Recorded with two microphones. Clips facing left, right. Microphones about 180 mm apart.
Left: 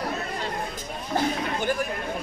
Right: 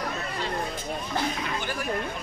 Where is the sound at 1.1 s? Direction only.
45° left (ahead or behind).